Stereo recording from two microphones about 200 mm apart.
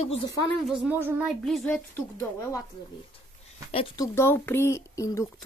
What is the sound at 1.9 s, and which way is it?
Speech, 15° left (ahead or behind).